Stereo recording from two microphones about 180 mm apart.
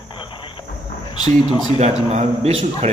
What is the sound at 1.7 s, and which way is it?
A man's voice, 40° right (ahead or behind).